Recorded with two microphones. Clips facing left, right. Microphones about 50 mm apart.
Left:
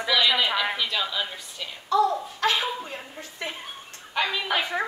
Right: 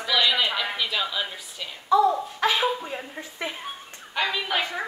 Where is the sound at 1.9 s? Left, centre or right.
Centre.